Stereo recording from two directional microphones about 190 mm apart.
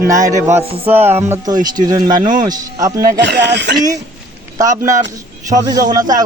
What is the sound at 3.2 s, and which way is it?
Speech, 60° right (ahead or behind).